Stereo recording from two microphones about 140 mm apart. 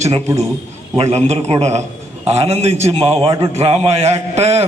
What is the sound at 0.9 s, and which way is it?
A man's voice, 45° right (ahead or behind).